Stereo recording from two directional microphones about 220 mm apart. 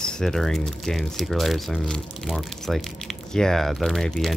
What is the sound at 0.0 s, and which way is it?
Speech, centre (ahead or behind).